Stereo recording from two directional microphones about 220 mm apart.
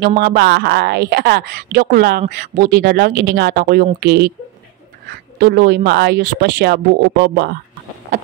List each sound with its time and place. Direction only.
0.0 s speech: 45° right (ahead or behind)
5.4 s speech: 45° right (ahead or behind)